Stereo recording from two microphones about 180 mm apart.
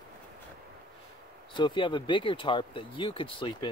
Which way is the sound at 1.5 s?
25° left (ahead or behind).